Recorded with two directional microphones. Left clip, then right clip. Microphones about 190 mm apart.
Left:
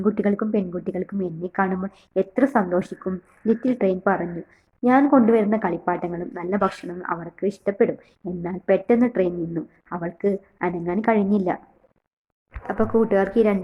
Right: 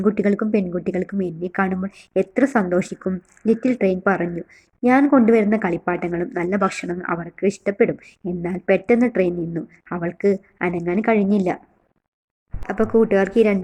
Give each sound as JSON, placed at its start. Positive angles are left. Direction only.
{"t": 0.1, "sound": "a woman's voice", "side_deg": -30}
{"t": 12.6, "sound": "a woman's voice", "side_deg": -30}